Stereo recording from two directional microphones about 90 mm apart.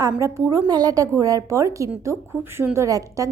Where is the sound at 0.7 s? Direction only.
45° right (ahead or behind).